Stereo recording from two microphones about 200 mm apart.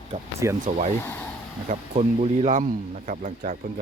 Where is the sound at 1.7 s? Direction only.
30° right (ahead or behind).